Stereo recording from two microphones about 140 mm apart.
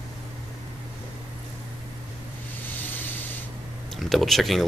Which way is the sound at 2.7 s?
15° left (ahead or behind).